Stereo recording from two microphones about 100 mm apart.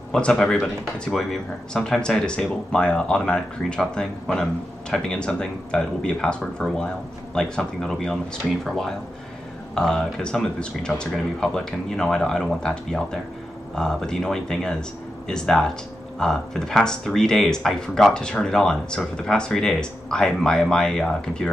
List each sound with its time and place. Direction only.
0.1 s speech: 5° left (ahead or behind)